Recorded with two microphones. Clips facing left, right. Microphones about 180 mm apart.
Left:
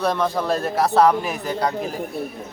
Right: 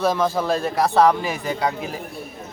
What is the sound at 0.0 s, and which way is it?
A man's voice, centre (ahead or behind).